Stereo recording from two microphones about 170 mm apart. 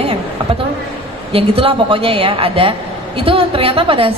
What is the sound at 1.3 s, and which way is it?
A woman's voice, 30° right (ahead or behind).